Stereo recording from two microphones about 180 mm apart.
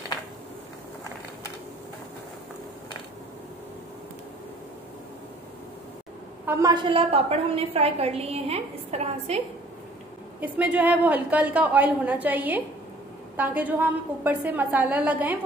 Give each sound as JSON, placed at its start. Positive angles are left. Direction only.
{"t": 6.4, "sound": "a woman's voice", "side_deg": -15}
{"t": 6.7, "sound": "a woman's voice", "side_deg": -25}
{"t": 10.4, "sound": "a woman's voice", "side_deg": -10}